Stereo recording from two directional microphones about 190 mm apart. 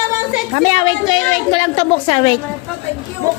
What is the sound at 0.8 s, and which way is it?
A woman's voice, 25° left (ahead or behind).